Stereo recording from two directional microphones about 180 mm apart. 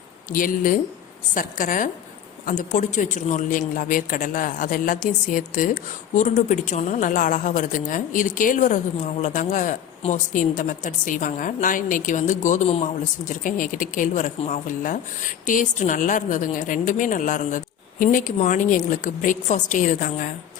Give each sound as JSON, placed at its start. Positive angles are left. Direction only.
{"t": 0.3, "sound": "a woman's voice", "side_deg": 50}
{"t": 13.4, "sound": "a woman's voice", "side_deg": 50}